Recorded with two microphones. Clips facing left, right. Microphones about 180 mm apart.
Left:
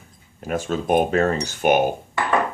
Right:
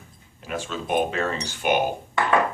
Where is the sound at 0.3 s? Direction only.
45° left (ahead or behind).